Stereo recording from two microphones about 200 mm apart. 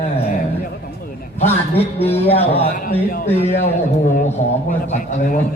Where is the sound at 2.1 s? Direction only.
30° left (ahead or behind).